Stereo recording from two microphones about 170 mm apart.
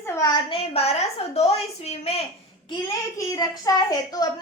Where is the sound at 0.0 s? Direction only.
20° left (ahead or behind); by 2.2 s 35° left (ahead or behind).